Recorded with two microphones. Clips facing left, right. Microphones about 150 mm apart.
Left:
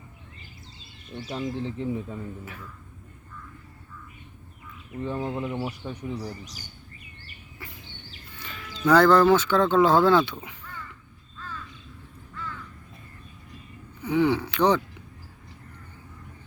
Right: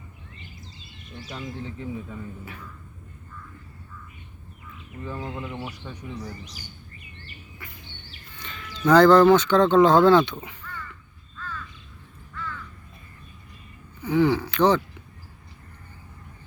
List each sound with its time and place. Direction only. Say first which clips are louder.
1.1 s speech: left 5 dB; 30° left (ahead or behind)
5.0 s speech: left 4 dB; 30° left (ahead or behind)
8.4 s a sound: right 1 dB; 5° left (ahead or behind)
8.9 s speech: right 3 dB; 5° left (ahead or behind)
14.0 s speech: right 2 dB; 10° left (ahead or behind)